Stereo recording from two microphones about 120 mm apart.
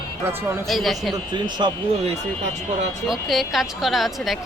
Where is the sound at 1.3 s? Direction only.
40° right (ahead or behind).